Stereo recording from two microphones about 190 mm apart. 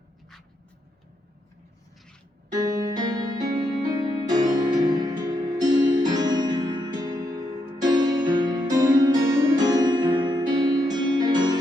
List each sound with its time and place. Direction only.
3.0 s music: 20° right (ahead or behind)